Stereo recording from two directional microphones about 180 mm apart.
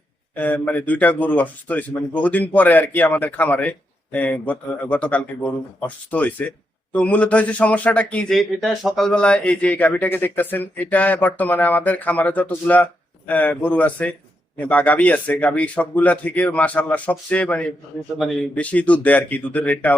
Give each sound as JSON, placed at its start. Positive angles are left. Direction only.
{"t": 0.3, "sound": "a man's voice", "side_deg": 10}